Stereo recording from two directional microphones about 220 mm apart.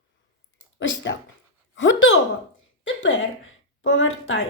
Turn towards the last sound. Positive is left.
turn(degrees=60)  # may be behind; listen again after turning